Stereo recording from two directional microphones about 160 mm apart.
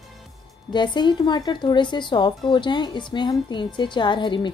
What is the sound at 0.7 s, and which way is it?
A woman's voice, 30° left (ahead or behind).